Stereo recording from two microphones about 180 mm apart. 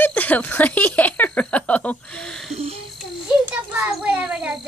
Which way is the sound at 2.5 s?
35° right (ahead or behind).